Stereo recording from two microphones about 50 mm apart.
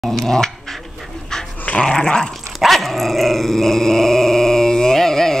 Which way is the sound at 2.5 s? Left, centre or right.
Centre.